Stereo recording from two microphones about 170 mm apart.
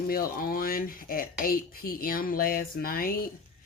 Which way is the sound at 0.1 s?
60° left (ahead or behind).